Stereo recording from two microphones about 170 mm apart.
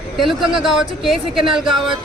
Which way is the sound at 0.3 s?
Centre (ahead or behind).